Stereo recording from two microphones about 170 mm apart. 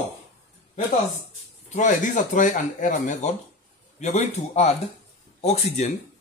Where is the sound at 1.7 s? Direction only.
45° left (ahead or behind).